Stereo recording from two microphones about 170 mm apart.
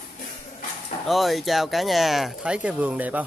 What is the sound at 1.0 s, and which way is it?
Speech, centre (ahead or behind).